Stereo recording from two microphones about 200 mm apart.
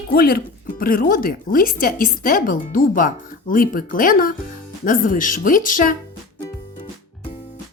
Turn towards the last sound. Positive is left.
turn(degrees=45)  # may be behind; listen again after turning